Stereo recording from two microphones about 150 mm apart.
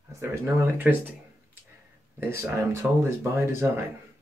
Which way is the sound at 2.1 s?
15° right (ahead or behind).